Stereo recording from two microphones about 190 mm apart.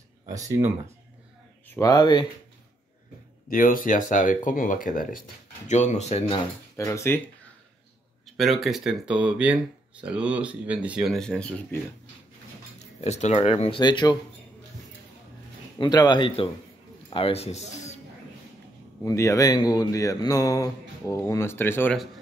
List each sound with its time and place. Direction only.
0.3 s speech: 15° right (ahead or behind)
1.7 s speech: 20° left (ahead or behind)
3.4 s speech: 45° left (ahead or behind)
6.2 s speech: 20° left (ahead or behind)
8.4 s speech: centre (ahead or behind)
12.7 s speech: 35° left (ahead or behind)
15.8 s speech: 20° left (ahead or behind)
19.0 s speech: 15° left (ahead or behind)
21.9 s speech: centre (ahead or behind)